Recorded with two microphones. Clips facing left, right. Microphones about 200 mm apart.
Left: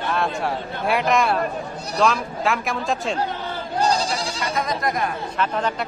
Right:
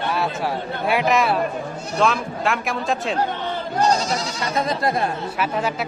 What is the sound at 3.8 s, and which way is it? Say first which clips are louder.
Goat: right 2 dB; 30° left (ahead or behind).